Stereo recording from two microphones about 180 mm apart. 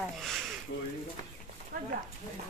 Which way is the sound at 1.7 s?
55° right (ahead or behind).